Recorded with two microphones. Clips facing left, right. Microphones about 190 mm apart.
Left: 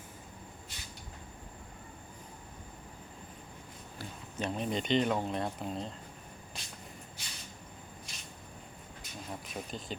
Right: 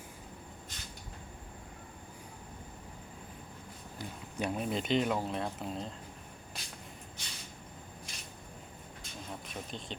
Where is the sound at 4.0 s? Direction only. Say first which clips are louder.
Right 1 dB; 15° right (ahead or behind).